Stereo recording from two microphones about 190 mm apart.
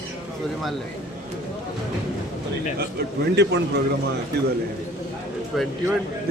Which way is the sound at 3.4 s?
60° right (ahead or behind).